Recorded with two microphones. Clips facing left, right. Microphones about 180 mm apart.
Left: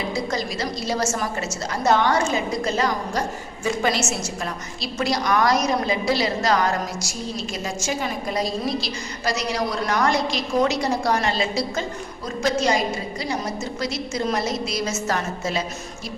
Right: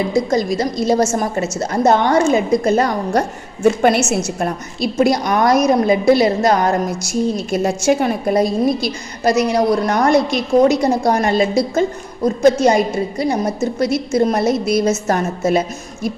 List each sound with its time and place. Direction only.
0.3 s a woman's voice: 45° right (ahead or behind)